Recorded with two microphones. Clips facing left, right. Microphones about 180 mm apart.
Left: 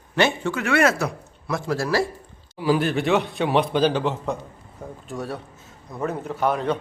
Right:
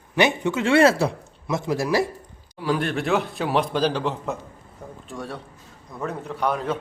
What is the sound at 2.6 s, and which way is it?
A man's voice, centre (ahead or behind).